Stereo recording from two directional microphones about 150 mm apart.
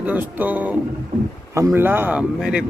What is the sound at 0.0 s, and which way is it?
Speech, 10° right (ahead or behind).